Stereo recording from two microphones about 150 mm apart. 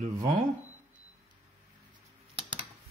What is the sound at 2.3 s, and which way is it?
Typing, 35° right (ahead or behind).